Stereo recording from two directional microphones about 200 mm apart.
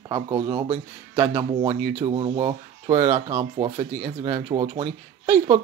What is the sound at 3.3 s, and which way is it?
Speech, 25° right (ahead or behind).